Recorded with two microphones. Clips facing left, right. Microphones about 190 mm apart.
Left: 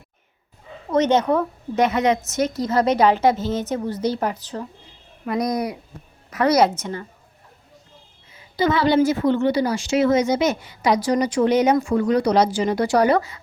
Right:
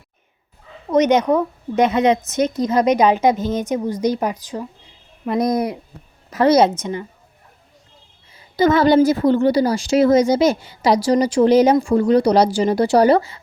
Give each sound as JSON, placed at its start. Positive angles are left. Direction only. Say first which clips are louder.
{"t": 0.9, "sound": "a woman's voice", "louder": "right 3 dB", "side_deg": -15}
{"t": 5.2, "sound": "a woman's voice", "louder": "right 4 dB", "side_deg": -25}
{"t": 8.3, "sound": "a woman's voice", "louder": "right 5 dB", "side_deg": -45}